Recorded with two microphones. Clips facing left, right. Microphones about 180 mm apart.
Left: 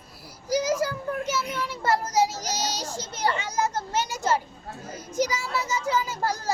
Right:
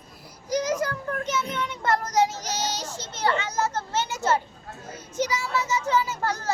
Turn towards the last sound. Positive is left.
turn(degrees=10)  # may be behind; listen again after turning